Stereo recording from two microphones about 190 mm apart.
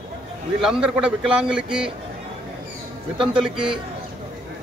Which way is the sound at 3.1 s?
25° right (ahead or behind).